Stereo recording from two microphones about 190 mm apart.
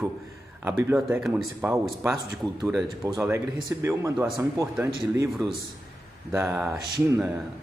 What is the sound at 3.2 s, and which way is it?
A man's voice, 15° right (ahead or behind).